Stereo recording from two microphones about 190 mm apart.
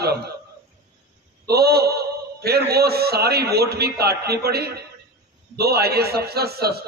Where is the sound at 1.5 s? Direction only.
55° right (ahead or behind).